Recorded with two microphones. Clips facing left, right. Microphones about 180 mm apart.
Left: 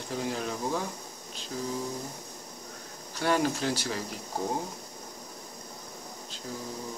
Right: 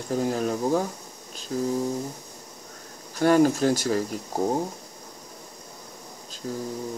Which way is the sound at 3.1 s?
45° right (ahead or behind).